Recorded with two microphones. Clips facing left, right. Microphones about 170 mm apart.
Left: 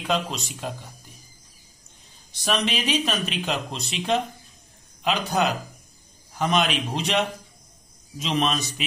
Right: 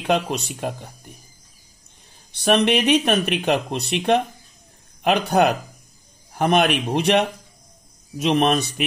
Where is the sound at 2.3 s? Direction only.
60° right (ahead or behind).